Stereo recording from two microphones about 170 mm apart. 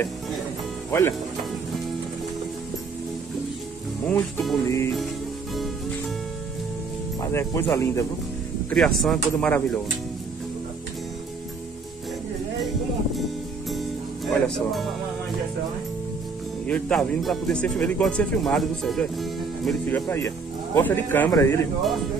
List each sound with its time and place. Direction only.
4.1 s speech: centre (ahead or behind)
4.6 s speech: 15° left (ahead or behind)
7.2 s speech: 15° left (ahead or behind)
8.6 s speech: 5° left (ahead or behind)
13.7 s music: centre (ahead or behind)
16.6 s speech: 5° left (ahead or behind)
20.1 s speech: 15° left (ahead or behind)